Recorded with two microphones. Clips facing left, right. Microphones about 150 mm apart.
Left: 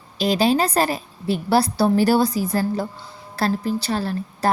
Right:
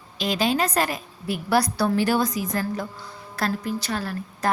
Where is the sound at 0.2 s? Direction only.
35° left (ahead or behind).